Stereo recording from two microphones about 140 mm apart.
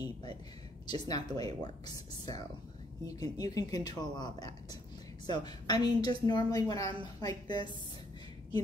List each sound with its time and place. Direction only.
0.0 s a woman's voice: 30° left (ahead or behind)